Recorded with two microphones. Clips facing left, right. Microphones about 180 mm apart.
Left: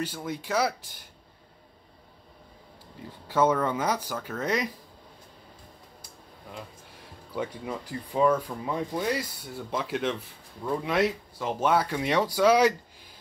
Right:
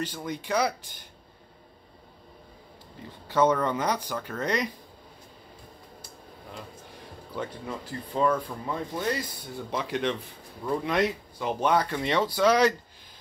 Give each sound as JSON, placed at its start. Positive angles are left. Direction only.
{"t": 0.0, "sound": "speech", "side_deg": 5}
{"t": 3.3, "sound": "speech", "side_deg": 5}
{"t": 7.3, "sound": "speech", "side_deg": 10}